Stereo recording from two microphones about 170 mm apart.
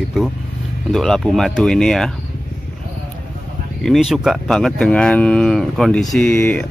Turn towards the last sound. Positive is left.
turn(degrees=10)  # may be behind; listen again after turning